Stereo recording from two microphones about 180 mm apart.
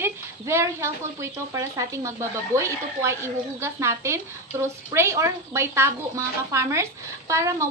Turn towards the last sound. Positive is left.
turn(degrees=-15)  # may be behind; listen again after turning